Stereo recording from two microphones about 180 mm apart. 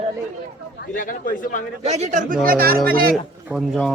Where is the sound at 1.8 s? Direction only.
40° right (ahead or behind).